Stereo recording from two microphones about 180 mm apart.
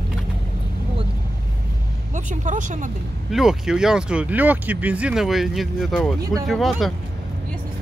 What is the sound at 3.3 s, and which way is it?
Speech, 5° right (ahead or behind).